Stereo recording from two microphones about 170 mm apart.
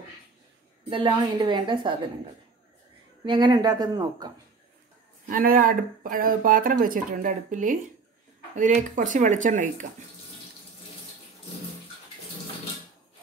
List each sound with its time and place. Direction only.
0.8 s a woman's voice: 25° right (ahead or behind)
3.3 s a woman's voice: 25° right (ahead or behind)
5.3 s speech: 55° right (ahead or behind)